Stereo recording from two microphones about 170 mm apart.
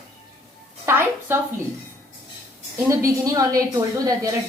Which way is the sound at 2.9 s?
20° right (ahead or behind).